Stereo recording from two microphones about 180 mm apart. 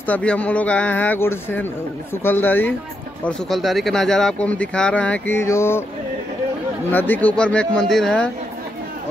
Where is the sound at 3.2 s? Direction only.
Centre (ahead or behind).